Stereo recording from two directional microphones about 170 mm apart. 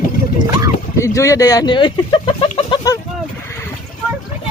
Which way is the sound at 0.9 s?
15° left (ahead or behind).